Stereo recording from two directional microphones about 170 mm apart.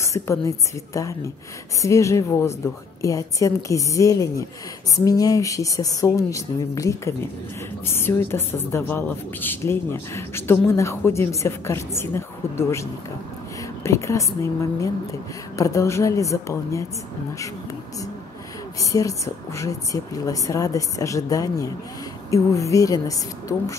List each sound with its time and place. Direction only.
0.0 s a woman's voice: 15° left (ahead or behind)
13.8 s a woman's voice: 15° left (ahead or behind)
18.8 s a woman's voice: 20° left (ahead or behind)